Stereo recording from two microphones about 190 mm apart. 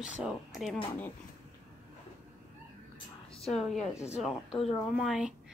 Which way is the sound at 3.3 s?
30° left (ahead or behind).